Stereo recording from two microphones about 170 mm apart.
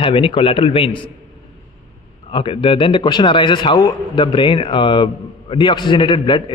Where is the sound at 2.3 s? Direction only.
30° left (ahead or behind).